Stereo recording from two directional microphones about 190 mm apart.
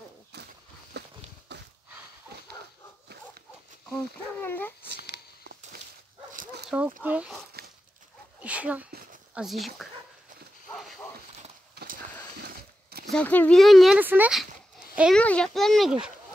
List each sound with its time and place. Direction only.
1.0 s walk: 60° right (ahead or behind)
1.5 s a sound: 60° right (ahead or behind)
3.9 s speech: 10° left (ahead or behind)
5.0 s a sound: 60° right (ahead or behind)
6.3 s dog: 50° right (ahead or behind)
7.0 s speech: 5° right (ahead or behind)
7.6 s dog: 55° right (ahead or behind)
8.4 s a sound: 5° right (ahead or behind)
9.3 s speech: centre (ahead or behind)
10.7 s a sound: 5° left (ahead or behind)
11.7 s horse: 55° right (ahead or behind)
13.1 s speech: 10° left (ahead or behind)